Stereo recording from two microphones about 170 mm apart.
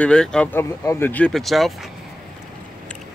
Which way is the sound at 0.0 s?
5° left (ahead or behind).